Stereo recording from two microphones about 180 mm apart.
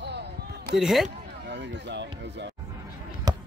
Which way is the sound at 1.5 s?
75° right (ahead or behind).